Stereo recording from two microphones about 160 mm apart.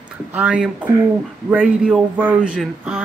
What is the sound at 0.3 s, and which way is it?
Speech, 10° right (ahead or behind).